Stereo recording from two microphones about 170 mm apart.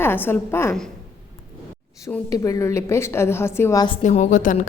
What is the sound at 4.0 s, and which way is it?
Speech, 45° left (ahead or behind).